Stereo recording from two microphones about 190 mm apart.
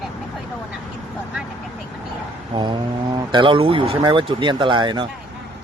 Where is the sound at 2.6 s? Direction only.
25° right (ahead or behind).